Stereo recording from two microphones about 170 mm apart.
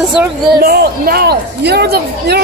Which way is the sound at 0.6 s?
60° right (ahead or behind).